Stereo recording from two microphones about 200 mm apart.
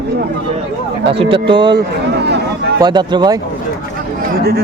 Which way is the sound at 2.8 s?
20° right (ahead or behind).